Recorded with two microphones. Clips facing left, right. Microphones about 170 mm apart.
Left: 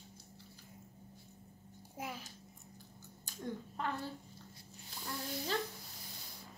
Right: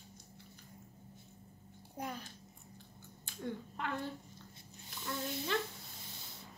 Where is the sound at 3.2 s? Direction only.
40° left (ahead or behind).